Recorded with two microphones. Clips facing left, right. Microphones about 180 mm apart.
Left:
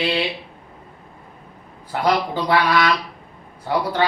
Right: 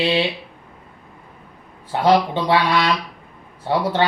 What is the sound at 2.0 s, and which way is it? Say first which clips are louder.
Speech: right 4 dB; 25° right (ahead or behind).